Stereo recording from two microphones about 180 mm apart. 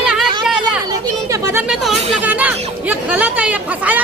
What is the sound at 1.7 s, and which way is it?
A woman's voice, 5° right (ahead or behind).